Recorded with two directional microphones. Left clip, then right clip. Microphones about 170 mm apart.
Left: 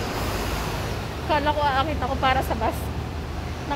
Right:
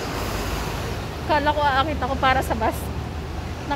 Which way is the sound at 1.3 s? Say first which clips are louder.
Right 2 dB; 20° right (ahead or behind).